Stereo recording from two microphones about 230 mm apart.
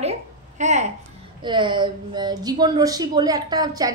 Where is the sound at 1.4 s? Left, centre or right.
Centre.